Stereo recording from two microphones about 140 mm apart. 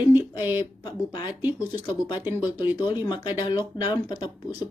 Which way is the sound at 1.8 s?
15° right (ahead or behind).